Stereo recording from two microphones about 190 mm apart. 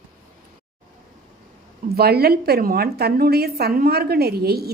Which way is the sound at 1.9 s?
55° right (ahead or behind).